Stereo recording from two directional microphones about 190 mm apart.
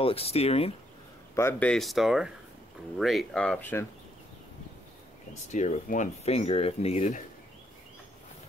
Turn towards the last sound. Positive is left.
turn(degrees=35)  # may be behind; listen again after turning